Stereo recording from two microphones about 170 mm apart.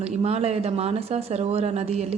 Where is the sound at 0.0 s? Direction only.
35° right (ahead or behind).